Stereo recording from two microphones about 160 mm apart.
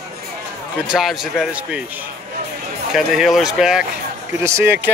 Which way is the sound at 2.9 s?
5° right (ahead or behind).